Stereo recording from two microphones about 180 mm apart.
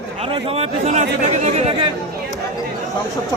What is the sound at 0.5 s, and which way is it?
Speech, 35° right (ahead or behind).